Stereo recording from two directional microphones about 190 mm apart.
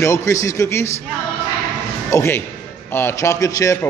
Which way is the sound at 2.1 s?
15° left (ahead or behind).